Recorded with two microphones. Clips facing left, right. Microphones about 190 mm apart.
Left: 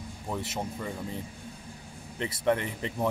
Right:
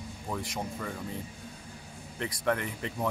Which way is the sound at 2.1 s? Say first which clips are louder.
Left 3 dB; 25° left (ahead or behind).